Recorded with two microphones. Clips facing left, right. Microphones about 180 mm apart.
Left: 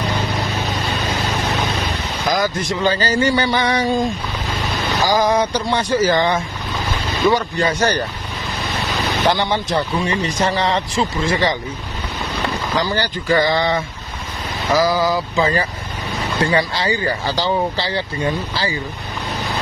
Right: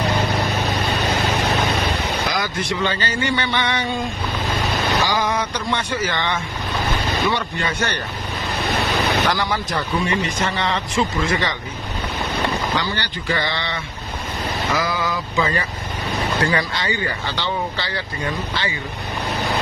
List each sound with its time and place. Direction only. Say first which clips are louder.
2.3 s speech: left 4 dB; 40° left (ahead or behind)
5.0 s speech: left 5 dB; 35° left (ahead or behind)
9.3 s speech: left 4 dB; 25° left (ahead or behind)
12.7 s speech: left 4 dB; 40° left (ahead or behind)